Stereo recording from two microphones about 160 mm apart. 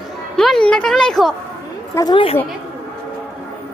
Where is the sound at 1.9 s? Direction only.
25° left (ahead or behind).